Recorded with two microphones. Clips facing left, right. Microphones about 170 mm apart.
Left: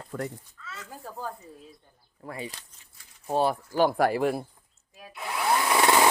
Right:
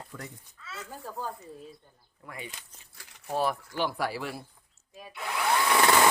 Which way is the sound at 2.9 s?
80° right.